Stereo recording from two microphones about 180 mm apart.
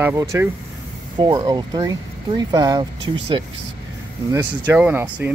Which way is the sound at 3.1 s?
30° right (ahead or behind).